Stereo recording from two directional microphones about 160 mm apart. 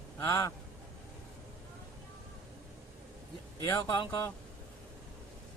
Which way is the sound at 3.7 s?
25° left (ahead or behind).